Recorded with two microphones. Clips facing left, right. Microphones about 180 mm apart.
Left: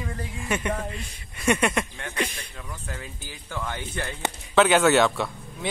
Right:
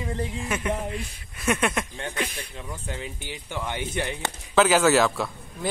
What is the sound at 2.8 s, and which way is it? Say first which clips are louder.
Speech: right 5 dB; 20° right (ahead or behind).